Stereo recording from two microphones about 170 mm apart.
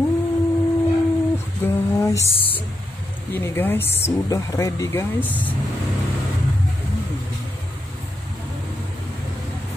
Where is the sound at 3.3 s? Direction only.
10° left (ahead or behind).